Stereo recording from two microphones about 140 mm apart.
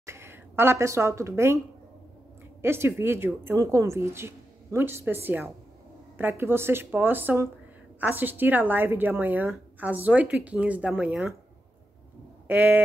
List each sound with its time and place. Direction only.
0.0 s a woman's voice: 20° right (ahead or behind)
2.6 s speech: 15° right (ahead or behind)
12.4 s speech: 15° right (ahead or behind)